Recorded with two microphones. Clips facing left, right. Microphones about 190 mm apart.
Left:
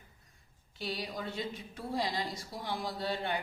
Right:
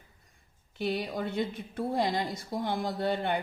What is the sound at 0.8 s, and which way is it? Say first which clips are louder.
A woman's voice: right 7 dB; 55° right (ahead or behind).